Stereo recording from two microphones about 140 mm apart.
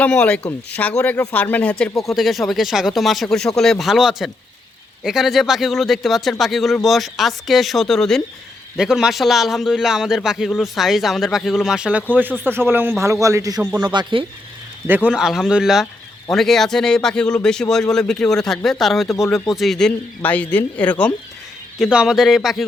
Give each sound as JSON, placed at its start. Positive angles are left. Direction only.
{"t": 0.0, "sound": "speech", "side_deg": 5}
{"t": 2.0, "sound": "a man's voice", "side_deg": 0}
{"t": 13.6, "sound": "a man's voice", "side_deg": -10}
{"t": 13.8, "sound": "speech", "side_deg": -30}
{"t": 14.8, "sound": "a man's voice", "side_deg": -10}
{"t": 19.0, "sound": "speech", "side_deg": 20}
{"t": 19.3, "sound": "speech", "side_deg": 0}
{"t": 21.8, "sound": "a man's voice", "side_deg": -5}